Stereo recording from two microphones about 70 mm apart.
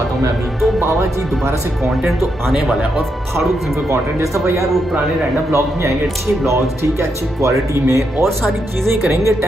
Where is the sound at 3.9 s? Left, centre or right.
Right.